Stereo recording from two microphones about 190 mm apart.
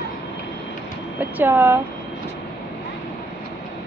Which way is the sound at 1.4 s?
10° right (ahead or behind).